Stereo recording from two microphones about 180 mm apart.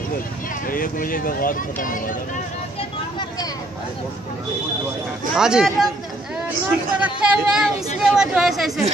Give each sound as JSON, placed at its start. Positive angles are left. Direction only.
{"t": 0.7, "sound": "speech", "side_deg": 50}
{"t": 2.8, "sound": "a sound", "side_deg": 25}
{"t": 5.3, "sound": "speech", "side_deg": -5}
{"t": 7.0, "sound": "speech", "side_deg": -5}